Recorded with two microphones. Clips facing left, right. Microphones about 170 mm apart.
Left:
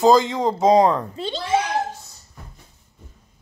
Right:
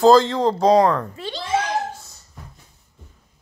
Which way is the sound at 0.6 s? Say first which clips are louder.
Left 1 dB; 20° left (ahead or behind).